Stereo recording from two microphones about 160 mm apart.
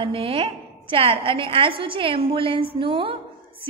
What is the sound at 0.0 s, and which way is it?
A woman's voice, 35° right (ahead or behind).